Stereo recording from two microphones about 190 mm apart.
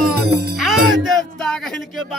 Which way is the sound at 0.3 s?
55° right (ahead or behind).